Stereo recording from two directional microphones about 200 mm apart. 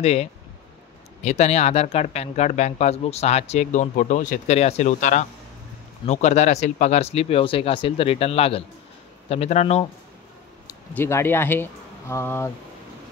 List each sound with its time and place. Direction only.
0.0 s speech: 30° left (ahead or behind)
10.7 s speech: 15° left (ahead or behind)